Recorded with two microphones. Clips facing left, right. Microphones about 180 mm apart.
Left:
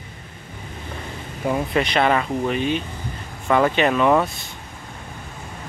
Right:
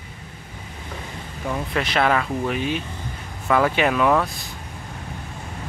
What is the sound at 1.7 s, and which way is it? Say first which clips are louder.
Speech: even; centre (ahead or behind).